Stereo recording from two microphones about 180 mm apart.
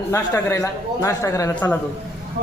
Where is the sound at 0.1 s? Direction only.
15° left (ahead or behind).